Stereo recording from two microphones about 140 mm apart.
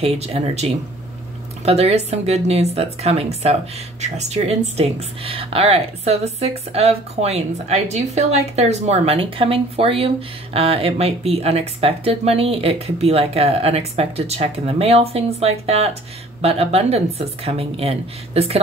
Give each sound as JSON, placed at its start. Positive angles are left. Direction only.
{"t": 0.0, "sound": "speech", "side_deg": -50}